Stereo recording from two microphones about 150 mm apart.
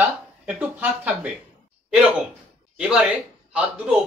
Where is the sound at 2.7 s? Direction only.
5° right (ahead or behind).